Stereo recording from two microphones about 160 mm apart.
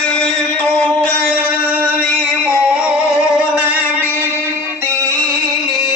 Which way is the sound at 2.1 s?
10° right (ahead or behind).